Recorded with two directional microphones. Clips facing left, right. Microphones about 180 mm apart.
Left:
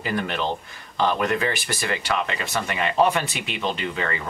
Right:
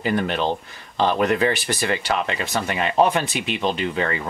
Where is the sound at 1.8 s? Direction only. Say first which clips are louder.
Right 3 dB; 25° right (ahead or behind).